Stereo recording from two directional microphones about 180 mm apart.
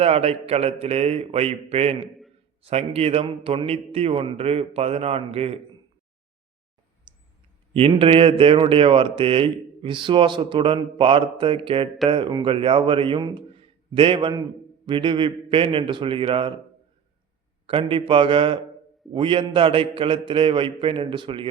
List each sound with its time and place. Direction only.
0.0 s a man's voice: 35° right (ahead or behind)
7.1 s a sound: 25° right (ahead or behind)
7.7 s speech: 30° right (ahead or behind)
17.7 s speech: 30° right (ahead or behind)